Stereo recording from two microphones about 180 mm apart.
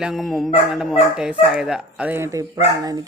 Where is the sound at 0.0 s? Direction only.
Centre (ahead or behind).